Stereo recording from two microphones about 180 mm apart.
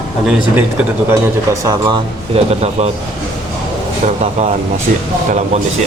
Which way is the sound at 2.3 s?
35° right (ahead or behind).